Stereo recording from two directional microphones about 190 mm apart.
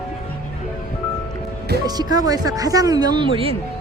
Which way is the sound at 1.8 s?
20° right (ahead or behind).